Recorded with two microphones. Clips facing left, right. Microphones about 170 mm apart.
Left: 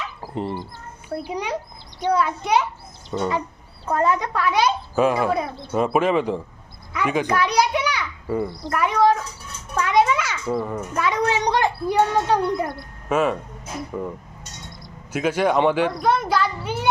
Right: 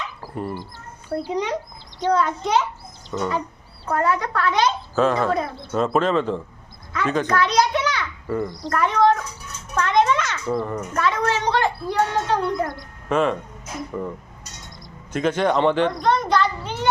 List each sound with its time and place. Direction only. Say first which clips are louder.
0.2 s dog: left 3 dB; 20° left (ahead or behind)
1.1 s a child's voice: right 3 dB; 10° left (ahead or behind)
6.9 s children playing: even; 15° left (ahead or behind)
8.7 s a child's voice: even; 10° left (ahead or behind)
15.1 s a child's voice: even; 10° left (ahead or behind)